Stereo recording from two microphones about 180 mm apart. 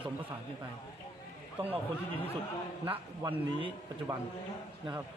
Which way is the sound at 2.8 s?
30° right (ahead or behind).